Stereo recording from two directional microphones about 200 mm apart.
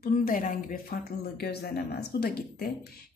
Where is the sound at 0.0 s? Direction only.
45° left (ahead or behind).